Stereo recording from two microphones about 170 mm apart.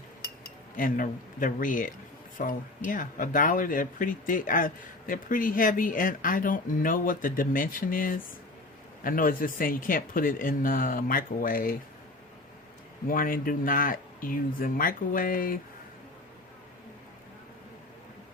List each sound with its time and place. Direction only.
0.8 s speech: 55° left (ahead or behind)
13.1 s speech: 55° left (ahead or behind)